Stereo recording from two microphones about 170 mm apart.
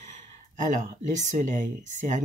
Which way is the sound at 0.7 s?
45° right (ahead or behind).